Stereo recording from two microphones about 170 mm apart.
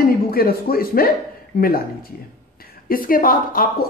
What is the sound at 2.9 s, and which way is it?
Speech, 55° left (ahead or behind).